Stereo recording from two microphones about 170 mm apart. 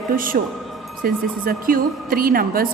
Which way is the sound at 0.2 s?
55° right (ahead or behind).